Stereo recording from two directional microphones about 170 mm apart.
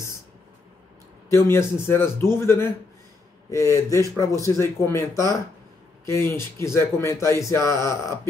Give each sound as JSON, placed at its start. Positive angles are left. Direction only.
{"t": 1.3, "sound": "speech", "side_deg": 15}